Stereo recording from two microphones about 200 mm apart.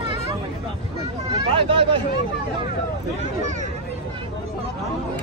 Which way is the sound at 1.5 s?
25° right (ahead or behind).